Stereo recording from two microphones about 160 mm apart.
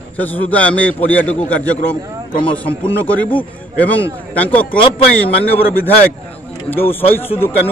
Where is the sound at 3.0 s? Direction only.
10° left (ahead or behind).